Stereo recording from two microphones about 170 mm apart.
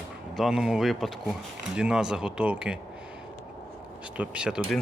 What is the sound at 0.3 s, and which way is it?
Speech, centre (ahead or behind).